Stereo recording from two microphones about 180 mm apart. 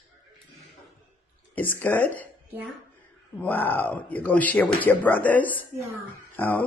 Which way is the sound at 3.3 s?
10° left (ahead or behind).